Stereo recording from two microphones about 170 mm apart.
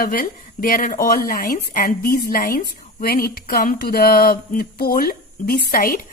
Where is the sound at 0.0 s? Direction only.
55° left (ahead or behind).